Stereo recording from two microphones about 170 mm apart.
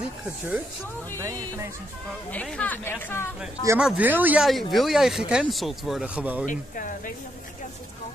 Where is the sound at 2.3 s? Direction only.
10° left (ahead or behind).